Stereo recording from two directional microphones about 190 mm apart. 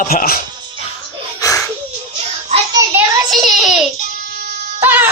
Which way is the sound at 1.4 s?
15° left (ahead or behind).